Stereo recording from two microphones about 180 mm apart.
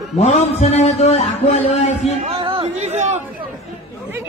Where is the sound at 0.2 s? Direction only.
35° left (ahead or behind).